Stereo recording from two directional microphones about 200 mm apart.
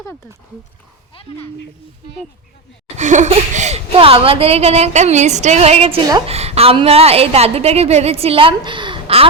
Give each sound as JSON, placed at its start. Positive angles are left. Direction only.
{"t": 2.9, "sound": "a woman's voice", "side_deg": -35}